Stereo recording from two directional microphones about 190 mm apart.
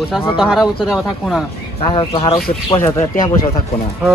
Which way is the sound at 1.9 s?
30° left (ahead or behind).